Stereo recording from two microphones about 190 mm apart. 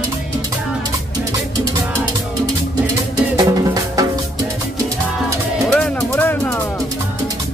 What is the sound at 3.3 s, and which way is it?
Music, 20° right (ahead or behind).